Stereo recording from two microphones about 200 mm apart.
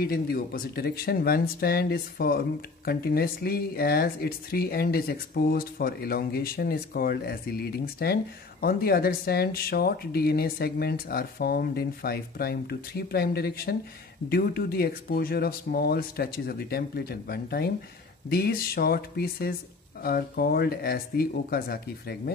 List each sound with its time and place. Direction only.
0.0 s speech: 45° left (ahead or behind)